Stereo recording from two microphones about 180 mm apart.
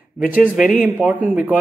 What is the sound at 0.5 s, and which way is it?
Speech, 5° right (ahead or behind).